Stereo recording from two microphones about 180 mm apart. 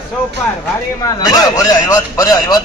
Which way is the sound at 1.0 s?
20° left (ahead or behind).